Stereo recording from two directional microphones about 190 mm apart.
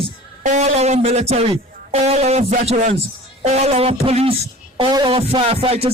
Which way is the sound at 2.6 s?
35° right (ahead or behind).